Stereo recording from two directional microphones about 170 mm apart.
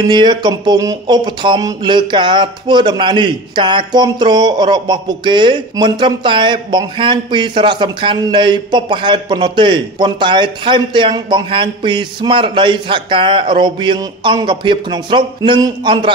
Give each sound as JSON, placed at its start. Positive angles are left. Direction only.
{"t": 0.1, "sound": "speech", "side_deg": -25}